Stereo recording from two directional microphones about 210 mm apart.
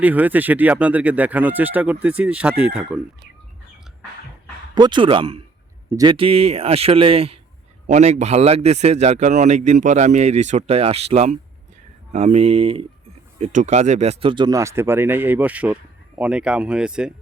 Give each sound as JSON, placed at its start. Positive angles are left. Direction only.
{"t": 0.0, "sound": "speech", "side_deg": -10}
{"t": 4.7, "sound": "a man's voice", "side_deg": -20}